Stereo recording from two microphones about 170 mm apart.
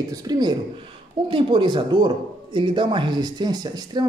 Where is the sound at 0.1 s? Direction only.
20° right (ahead or behind).